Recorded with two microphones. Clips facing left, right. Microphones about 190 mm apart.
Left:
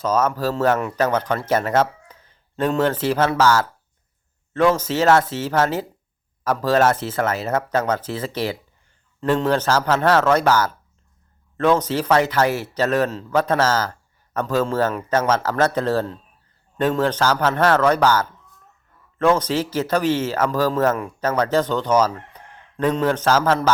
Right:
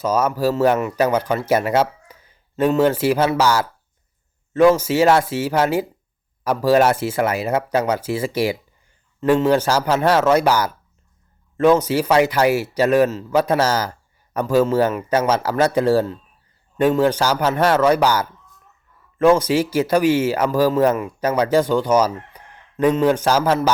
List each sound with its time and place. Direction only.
0.0 s speech: 10° right (ahead or behind)